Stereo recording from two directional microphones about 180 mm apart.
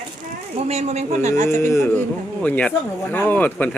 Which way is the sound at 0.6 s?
35° right (ahead or behind).